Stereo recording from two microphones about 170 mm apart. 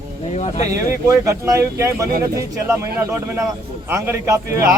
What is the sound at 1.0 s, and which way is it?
A man's voice, 20° right (ahead or behind).